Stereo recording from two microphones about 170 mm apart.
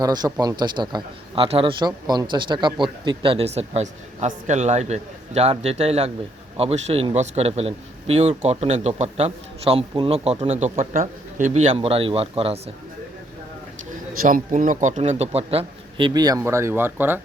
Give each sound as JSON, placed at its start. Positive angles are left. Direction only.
{"t": 0.0, "sound": "a man's voice", "side_deg": -25}
{"t": 14.2, "sound": "a man's voice", "side_deg": -55}